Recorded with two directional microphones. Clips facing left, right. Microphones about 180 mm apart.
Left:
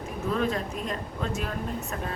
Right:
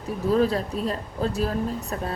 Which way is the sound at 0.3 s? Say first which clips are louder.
Right 6 dB; 35° right (ahead or behind).